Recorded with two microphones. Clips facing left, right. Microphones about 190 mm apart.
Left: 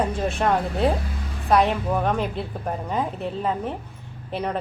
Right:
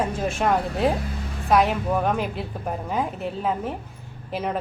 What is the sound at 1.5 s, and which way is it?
A woman's voice, centre (ahead or behind).